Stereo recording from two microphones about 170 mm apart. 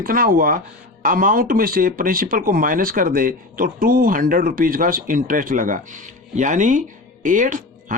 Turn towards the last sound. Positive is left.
turn(degrees=-50)  # may be behind; listen again after turning